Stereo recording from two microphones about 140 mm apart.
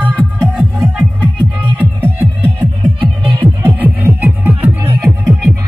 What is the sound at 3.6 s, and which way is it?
Music, 15° right (ahead or behind).